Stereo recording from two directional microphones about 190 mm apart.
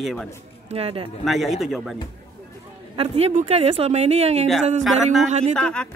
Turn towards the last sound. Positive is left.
turn(degrees=5)  # may be behind; listen again after turning